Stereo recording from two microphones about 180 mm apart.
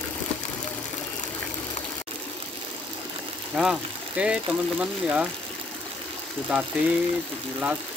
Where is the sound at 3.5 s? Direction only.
5° right (ahead or behind).